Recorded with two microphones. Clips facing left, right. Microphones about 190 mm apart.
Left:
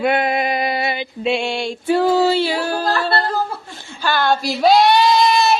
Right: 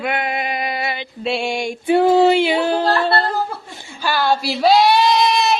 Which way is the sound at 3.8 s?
10° right (ahead or behind).